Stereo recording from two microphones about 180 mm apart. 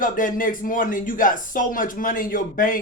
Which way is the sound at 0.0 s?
50° left (ahead or behind).